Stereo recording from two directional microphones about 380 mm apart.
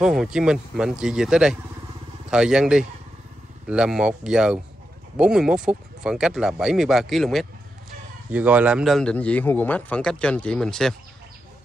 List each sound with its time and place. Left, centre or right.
0.0 s a man's voice: centre